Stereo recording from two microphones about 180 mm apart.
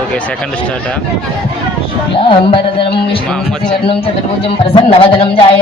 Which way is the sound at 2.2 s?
30° left (ahead or behind).